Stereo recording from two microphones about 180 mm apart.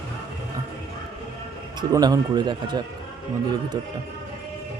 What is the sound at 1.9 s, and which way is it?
Speech, 20° right (ahead or behind).